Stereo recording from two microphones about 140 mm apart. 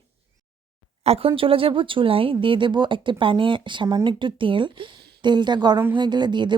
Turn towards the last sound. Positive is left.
turn(degrees=-35)  # may be behind; listen again after turning